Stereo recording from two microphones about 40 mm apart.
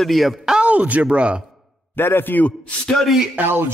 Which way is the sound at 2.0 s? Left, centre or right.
Left.